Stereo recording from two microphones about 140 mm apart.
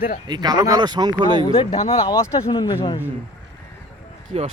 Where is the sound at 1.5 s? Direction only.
45° left (ahead or behind).